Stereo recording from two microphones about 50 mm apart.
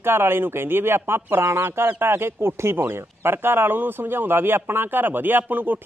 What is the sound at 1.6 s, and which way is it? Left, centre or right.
Speech, right.